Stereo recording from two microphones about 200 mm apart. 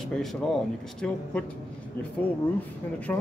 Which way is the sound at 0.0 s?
Centre (ahead or behind).